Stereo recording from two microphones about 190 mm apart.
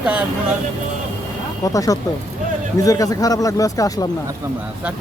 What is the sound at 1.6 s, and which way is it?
Speech, 20° left (ahead or behind).